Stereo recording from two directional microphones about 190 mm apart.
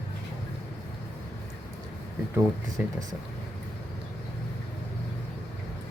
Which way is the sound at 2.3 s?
20° right (ahead or behind).